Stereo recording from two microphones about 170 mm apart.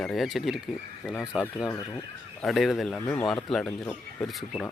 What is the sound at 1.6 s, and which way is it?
Speech, 20° left (ahead or behind).